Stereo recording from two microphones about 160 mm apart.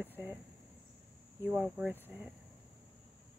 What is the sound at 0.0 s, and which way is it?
Cricket, 10° right (ahead or behind).